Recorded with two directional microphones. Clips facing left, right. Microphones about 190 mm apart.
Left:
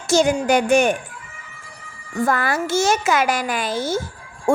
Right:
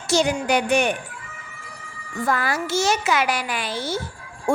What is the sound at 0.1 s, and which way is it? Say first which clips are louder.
Speech: left 4 dB; 45° left (ahead or behind).